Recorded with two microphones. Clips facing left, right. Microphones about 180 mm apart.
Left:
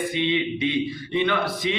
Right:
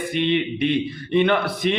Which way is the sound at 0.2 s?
60° right (ahead or behind).